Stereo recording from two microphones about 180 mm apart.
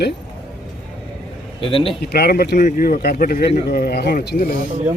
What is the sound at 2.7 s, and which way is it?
Speech, 50° left (ahead or behind).